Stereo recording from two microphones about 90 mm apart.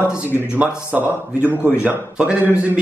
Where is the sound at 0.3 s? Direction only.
20° right (ahead or behind).